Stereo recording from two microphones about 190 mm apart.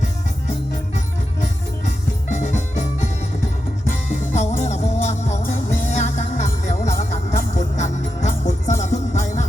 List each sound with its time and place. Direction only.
0.9 s music: 40° left (ahead or behind)
4.4 s music: 40° left (ahead or behind)